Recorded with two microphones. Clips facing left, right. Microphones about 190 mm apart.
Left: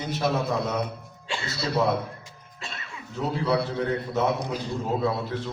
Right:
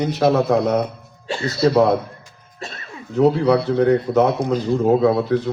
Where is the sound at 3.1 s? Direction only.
60° right (ahead or behind).